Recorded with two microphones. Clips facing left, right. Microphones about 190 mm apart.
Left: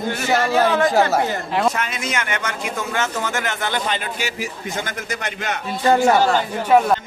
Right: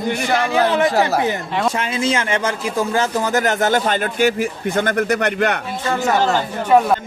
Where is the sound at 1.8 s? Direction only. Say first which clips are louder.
Right 5 dB; 30° right (ahead or behind); by 5.6 s 60° right (ahead or behind).